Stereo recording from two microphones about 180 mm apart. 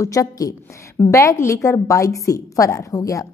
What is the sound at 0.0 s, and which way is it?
A woman's voice, 20° left (ahead or behind).